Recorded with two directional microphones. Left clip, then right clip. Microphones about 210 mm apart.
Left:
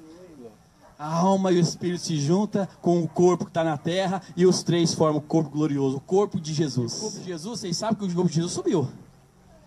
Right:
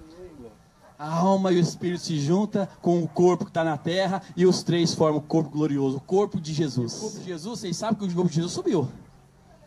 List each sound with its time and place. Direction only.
0.9 s a man's voice: 20° left (ahead or behind)